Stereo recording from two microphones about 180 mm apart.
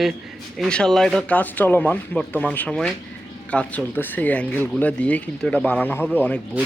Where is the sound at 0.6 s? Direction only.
5° left (ahead or behind).